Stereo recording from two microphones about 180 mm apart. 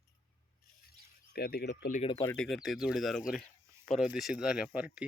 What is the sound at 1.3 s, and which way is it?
Speech, 60° left (ahead or behind).